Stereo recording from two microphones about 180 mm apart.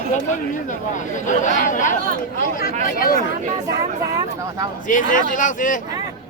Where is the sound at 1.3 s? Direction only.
45° left (ahead or behind).